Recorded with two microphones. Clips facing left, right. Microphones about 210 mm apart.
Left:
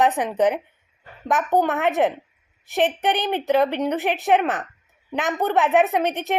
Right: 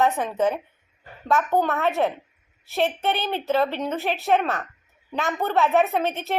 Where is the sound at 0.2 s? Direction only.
15° left (ahead or behind).